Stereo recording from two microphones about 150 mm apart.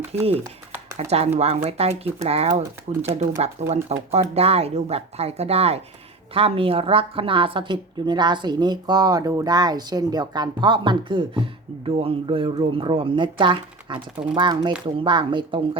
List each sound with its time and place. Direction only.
0.1 s a woman's voice: 40° right (ahead or behind)